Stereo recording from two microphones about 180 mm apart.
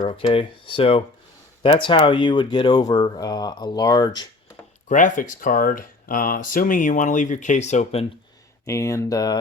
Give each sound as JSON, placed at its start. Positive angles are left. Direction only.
{"t": 0.0, "sound": "speech", "side_deg": 30}
{"t": 4.9, "sound": "speech", "side_deg": 45}
{"t": 8.6, "sound": "speech", "side_deg": 15}